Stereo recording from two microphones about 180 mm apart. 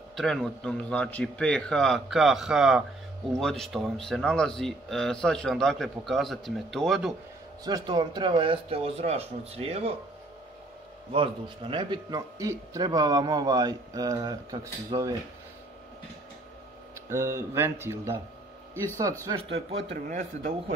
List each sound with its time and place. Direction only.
0.1 s speech: centre (ahead or behind)
7.6 s speech: 25° right (ahead or behind)
11.1 s speech: 30° right (ahead or behind)
17.1 s a man's voice: 15° right (ahead or behind)
20.1 s a man's voice: 45° right (ahead or behind)